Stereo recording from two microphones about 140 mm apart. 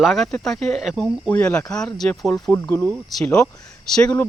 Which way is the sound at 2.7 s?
10° left (ahead or behind).